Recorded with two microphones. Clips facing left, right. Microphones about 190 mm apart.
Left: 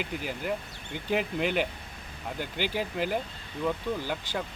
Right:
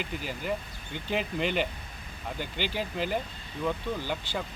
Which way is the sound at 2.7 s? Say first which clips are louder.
Left 1 dB; 10° left (ahead or behind).